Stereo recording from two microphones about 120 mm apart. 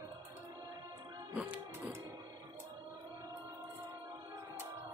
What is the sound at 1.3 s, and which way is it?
Music, 10° right (ahead or behind).